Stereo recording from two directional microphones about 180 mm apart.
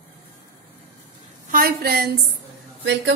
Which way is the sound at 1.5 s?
55° right (ahead or behind).